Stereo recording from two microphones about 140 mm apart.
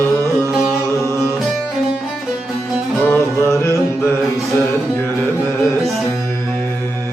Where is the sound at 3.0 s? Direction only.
15° left (ahead or behind).